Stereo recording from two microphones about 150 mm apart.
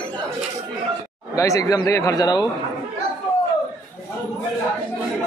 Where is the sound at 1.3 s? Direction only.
20° left (ahead or behind).